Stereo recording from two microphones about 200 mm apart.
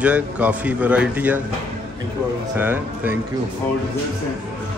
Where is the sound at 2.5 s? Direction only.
10° right (ahead or behind).